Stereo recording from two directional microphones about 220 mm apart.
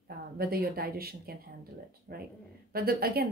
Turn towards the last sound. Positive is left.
turn(degrees=-45)  # may be behind; listen again after turning